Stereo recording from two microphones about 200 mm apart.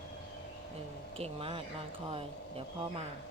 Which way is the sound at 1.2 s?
30° right (ahead or behind).